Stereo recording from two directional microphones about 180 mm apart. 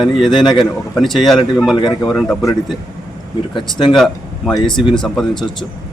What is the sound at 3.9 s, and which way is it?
Speech, centre (ahead or behind).